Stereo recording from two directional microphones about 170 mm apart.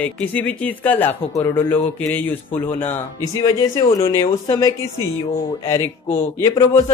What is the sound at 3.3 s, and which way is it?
Speech, 20° left (ahead or behind).